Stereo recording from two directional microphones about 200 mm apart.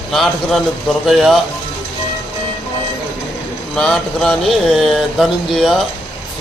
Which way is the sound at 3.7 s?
Centre (ahead or behind).